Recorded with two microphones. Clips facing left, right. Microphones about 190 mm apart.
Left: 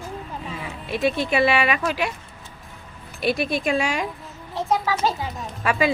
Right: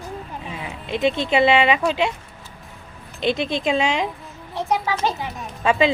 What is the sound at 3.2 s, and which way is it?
Speech, 20° right (ahead or behind).